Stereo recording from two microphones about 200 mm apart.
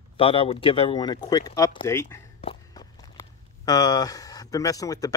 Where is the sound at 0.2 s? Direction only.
25° left (ahead or behind).